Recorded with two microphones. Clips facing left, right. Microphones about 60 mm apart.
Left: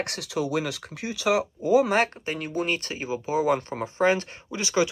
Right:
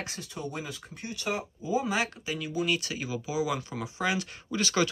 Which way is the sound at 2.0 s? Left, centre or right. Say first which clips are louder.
Left 6 dB; left.